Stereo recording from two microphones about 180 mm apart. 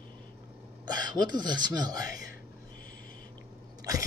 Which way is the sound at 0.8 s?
25° right (ahead or behind).